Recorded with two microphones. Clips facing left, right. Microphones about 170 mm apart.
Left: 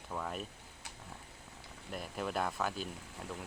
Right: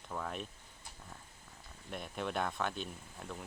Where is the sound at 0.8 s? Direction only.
75° left (ahead or behind).